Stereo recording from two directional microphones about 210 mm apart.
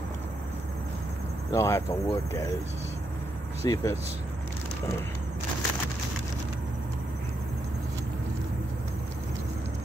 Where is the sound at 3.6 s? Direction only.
20° left (ahead or behind).